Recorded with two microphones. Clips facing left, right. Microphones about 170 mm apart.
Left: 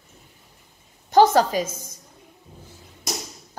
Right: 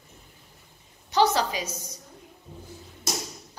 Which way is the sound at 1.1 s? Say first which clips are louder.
Left 7 dB; 50° left (ahead or behind).